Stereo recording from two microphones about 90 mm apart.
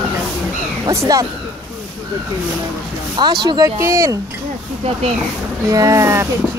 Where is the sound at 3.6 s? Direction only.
35° right (ahead or behind).